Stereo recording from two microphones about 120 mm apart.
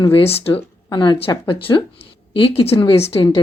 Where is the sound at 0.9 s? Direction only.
40° left (ahead or behind); by 3.2 s 55° left (ahead or behind).